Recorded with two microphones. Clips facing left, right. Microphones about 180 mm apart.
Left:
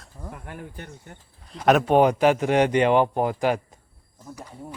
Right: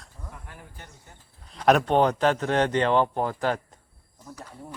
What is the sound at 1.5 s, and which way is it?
Speech, centre (ahead or behind).